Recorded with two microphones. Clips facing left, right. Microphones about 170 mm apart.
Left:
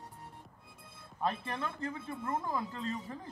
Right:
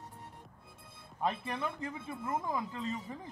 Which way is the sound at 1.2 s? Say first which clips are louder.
Right 1 dB; 15° right (ahead or behind).